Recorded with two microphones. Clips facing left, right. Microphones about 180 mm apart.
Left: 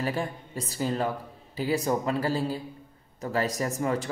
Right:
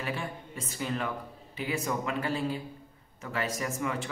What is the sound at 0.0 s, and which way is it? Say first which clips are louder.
Speech: left 5 dB; 35° left (ahead or behind).